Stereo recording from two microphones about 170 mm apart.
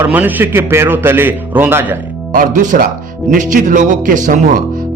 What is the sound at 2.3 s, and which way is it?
Speech, 50° right (ahead or behind).